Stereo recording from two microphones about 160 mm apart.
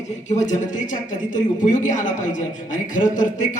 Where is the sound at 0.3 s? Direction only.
50° left (ahead or behind).